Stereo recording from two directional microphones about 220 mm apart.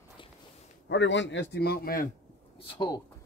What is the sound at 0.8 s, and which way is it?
A man's voice, 55° left (ahead or behind).